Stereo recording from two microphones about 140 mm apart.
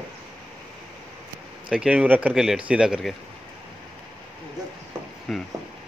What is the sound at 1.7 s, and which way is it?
A man's voice, 5° right (ahead or behind).